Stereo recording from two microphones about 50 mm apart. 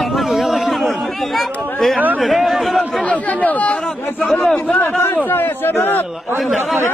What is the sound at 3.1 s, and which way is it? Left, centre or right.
Speech, left.